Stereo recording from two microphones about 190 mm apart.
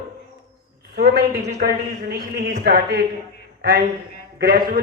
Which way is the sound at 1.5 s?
55° right (ahead or behind).